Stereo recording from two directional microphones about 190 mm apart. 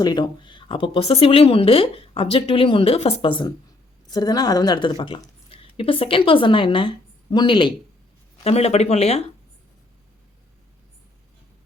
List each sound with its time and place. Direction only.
0.0 s a woman's voice: 25° left (ahead or behind)